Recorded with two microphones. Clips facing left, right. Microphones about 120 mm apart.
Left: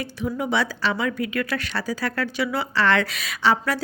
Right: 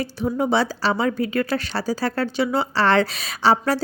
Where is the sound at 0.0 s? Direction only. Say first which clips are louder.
Right 4 dB; 35° right (ahead or behind).